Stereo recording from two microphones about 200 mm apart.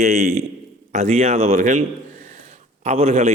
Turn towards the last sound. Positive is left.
turn(degrees=-30)  # may be behind; listen again after turning